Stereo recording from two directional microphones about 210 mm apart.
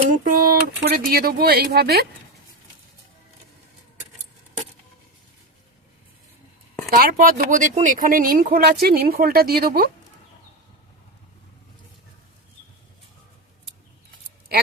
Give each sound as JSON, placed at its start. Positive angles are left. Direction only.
{"t": 0.3, "sound": "speech", "side_deg": -45}
{"t": 6.9, "sound": "speech", "side_deg": -45}